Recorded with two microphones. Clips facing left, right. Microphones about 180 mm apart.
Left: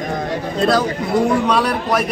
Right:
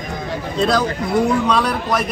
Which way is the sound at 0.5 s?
Centre (ahead or behind).